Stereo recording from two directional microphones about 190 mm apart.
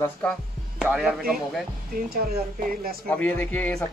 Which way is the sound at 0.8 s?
5° right (ahead or behind).